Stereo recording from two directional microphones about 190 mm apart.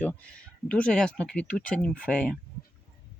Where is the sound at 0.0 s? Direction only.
5° left (ahead or behind).